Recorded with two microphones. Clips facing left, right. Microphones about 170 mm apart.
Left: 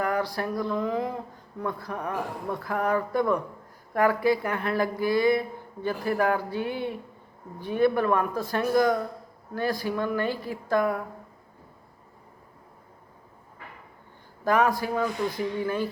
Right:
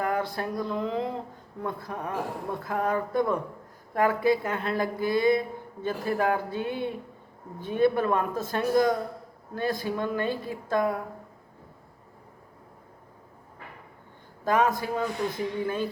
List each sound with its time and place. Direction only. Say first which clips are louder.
0.0 s a sound: left 1 dB; 20° right (ahead or behind)
1.6 s speech: left 2 dB; 20° right (ahead or behind)
14.4 s speech: left 1 dB; 20° right (ahead or behind)